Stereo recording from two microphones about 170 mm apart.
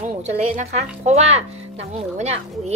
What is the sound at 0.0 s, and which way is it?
Speech, 45° right (ahead or behind).